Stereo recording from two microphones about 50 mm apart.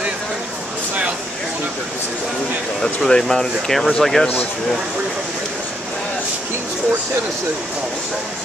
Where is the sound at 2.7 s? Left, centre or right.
Centre.